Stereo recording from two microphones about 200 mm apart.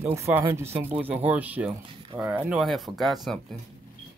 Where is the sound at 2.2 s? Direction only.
5° right (ahead or behind).